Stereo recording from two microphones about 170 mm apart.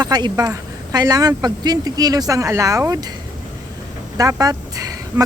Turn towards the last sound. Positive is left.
turn(degrees=-20)  # may be behind; listen again after turning